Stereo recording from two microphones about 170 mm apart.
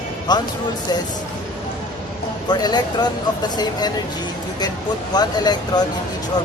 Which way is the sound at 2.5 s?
25° left (ahead or behind).